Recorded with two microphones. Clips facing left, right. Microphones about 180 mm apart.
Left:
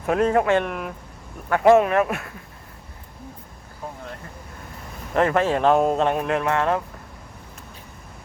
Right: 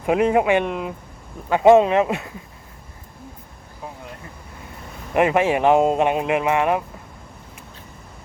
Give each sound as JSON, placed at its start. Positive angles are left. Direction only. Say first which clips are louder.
{"t": 0.0, "sound": "speech", "louder": "right 2 dB", "side_deg": -15}
{"t": 5.1, "sound": "speech", "louder": "right 2 dB", "side_deg": -15}